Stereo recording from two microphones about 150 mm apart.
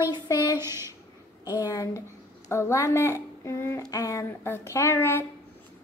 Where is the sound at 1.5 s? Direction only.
25° left (ahead or behind).